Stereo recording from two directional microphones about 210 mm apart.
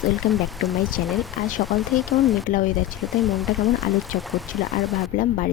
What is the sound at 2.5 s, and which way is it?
Speech, 40° left (ahead or behind).